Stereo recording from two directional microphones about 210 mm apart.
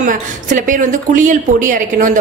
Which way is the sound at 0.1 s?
40° right (ahead or behind).